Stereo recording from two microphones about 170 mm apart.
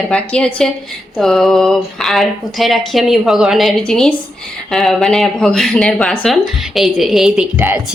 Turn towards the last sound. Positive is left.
turn(degrees=-10)  # may be behind; listen again after turning